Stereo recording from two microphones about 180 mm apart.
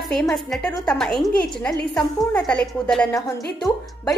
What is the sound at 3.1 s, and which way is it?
Speech, 20° left (ahead or behind).